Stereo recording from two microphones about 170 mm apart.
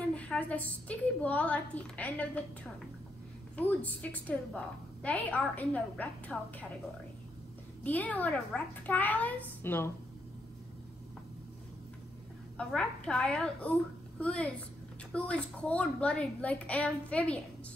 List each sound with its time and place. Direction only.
0.0 s a woman's voice: 5° left (ahead or behind)
3.5 s a woman's voice: 10° left (ahead or behind)
7.8 s a woman's voice: 10° left (ahead or behind)
12.5 s a woman's voice: 5° left (ahead or behind)